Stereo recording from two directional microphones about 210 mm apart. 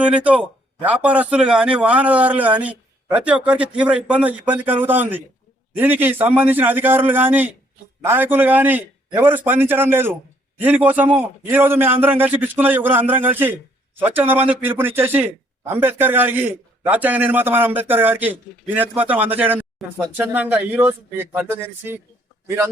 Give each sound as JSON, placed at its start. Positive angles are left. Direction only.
{"t": 0.0, "sound": "a man's voice", "side_deg": -5}